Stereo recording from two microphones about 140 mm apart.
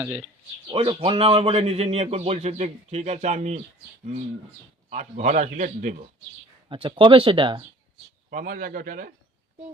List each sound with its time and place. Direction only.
0.7 s a man's voice: 40° right (ahead or behind)
4.9 s a man's voice: 60° right (ahead or behind)
6.7 s speech: 35° right (ahead or behind)
8.3 s a man's voice: 80° right